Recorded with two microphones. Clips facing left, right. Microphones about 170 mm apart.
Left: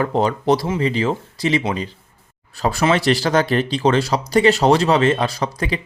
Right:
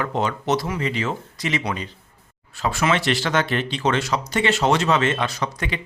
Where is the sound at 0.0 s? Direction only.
35° left (ahead or behind).